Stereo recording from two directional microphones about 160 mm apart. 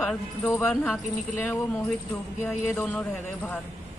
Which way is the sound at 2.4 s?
5° left (ahead or behind).